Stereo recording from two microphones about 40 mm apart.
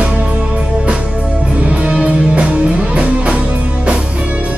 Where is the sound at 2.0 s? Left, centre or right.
Right.